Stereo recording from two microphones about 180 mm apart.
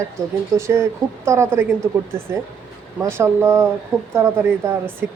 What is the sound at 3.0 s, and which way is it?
Speech, 15° right (ahead or behind).